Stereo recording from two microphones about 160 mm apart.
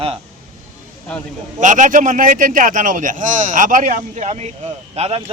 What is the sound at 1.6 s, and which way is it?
A man's voice, 50° right (ahead or behind).